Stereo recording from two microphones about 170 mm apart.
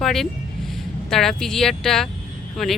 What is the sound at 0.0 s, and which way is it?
Speech, centre (ahead or behind).